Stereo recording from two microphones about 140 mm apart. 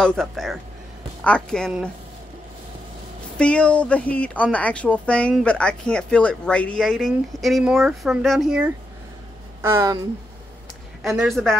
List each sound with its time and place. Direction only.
0.0 s speech: 5° left (ahead or behind)
3.3 s speech: 10° left (ahead or behind)
6.8 s speech: centre (ahead or behind)
9.6 s speech: 20° right (ahead or behind)
11.0 s speech: centre (ahead or behind)